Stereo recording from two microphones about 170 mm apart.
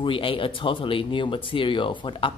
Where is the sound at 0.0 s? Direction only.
30° left (ahead or behind).